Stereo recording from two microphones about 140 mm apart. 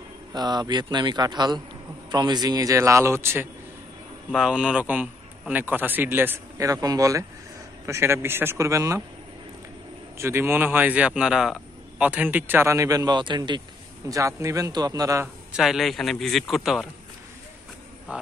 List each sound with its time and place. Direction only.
0.3 s a man's voice: 30° right (ahead or behind)
4.3 s a man's voice: 5° right (ahead or behind); by 9.0 s 20° right (ahead or behind)
10.1 s a man's voice: 20° right (ahead or behind)
15.5 s speech: centre (ahead or behind)
18.1 s speech: 10° right (ahead or behind)